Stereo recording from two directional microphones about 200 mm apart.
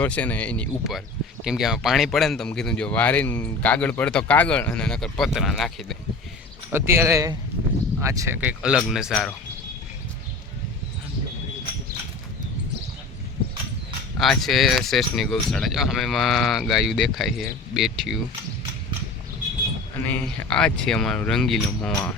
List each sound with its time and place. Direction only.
0.0 s speech: 5° left (ahead or behind)
6.7 s speech: 10° right (ahead or behind)
14.2 s speech: centre (ahead or behind)
20.0 s speech: 5° left (ahead or behind)